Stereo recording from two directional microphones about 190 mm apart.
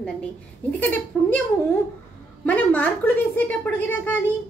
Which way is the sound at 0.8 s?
10° left (ahead or behind).